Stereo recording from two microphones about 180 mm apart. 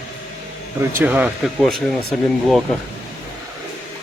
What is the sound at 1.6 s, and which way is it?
Speech, 5° left (ahead or behind).